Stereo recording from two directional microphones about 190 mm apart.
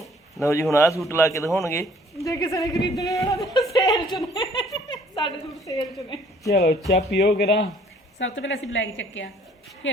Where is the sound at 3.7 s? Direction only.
20° left (ahead or behind).